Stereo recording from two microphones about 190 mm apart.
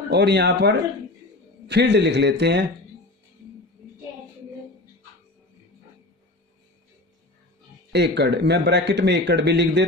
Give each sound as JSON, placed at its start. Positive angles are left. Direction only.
{"t": 0.1, "sound": "speech", "side_deg": -60}
{"t": 7.9, "sound": "speech", "side_deg": -60}